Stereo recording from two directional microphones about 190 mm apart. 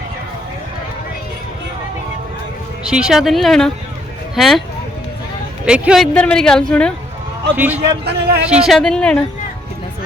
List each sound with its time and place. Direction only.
2.8 s speech: 5° right (ahead or behind)
5.6 s speech: 5° right (ahead or behind)
7.5 s a man's voice: 10° right (ahead or behind)
8.0 s speech: 60° right (ahead or behind)
8.4 s speech: 5° right (ahead or behind)